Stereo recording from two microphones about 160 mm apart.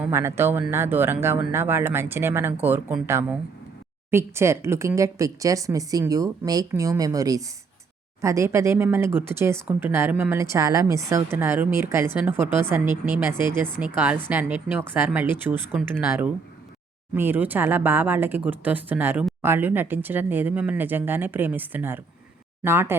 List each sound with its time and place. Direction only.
0.0 s speech: 15° right (ahead or behind)